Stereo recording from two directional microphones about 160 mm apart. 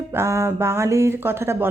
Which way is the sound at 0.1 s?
15° right (ahead or behind).